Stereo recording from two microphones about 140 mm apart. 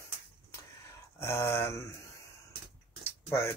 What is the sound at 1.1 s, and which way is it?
Speech, 20° left (ahead or behind).